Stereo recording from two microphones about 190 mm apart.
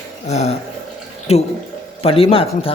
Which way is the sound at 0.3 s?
35° left (ahead or behind).